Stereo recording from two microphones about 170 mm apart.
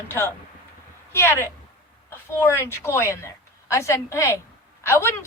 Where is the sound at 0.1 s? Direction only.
10° left (ahead or behind).